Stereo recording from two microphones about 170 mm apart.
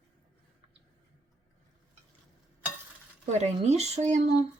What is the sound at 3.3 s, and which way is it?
Speech, 40° right (ahead or behind).